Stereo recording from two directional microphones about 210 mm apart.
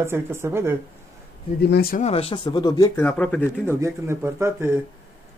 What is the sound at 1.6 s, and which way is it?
Speech, 50° left (ahead or behind).